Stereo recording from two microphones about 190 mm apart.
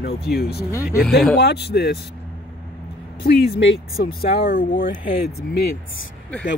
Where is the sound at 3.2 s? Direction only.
55° left (ahead or behind).